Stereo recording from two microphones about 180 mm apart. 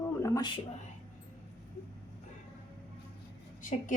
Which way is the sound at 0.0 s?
20° left (ahead or behind).